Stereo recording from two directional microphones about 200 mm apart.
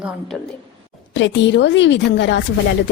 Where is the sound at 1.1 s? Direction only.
65° left (ahead or behind).